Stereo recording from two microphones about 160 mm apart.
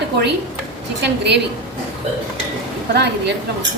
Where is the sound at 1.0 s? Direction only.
90° right.